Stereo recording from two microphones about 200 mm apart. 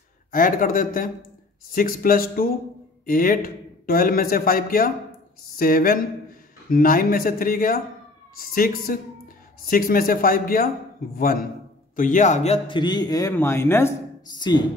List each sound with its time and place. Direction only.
0.3 s a man's voice: 45° left (ahead or behind)
12.6 s speech: 20° left (ahead or behind)